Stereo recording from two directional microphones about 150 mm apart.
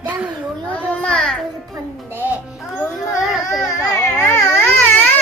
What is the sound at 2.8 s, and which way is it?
Speech, centre (ahead or behind).